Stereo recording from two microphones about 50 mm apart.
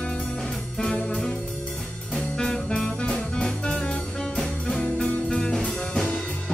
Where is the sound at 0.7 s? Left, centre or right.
Centre.